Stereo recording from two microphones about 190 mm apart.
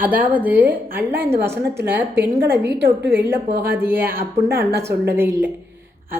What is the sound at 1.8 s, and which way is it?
A woman's voice, 60° right (ahead or behind).